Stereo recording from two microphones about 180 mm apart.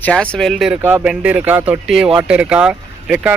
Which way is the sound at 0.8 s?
15° right (ahead or behind).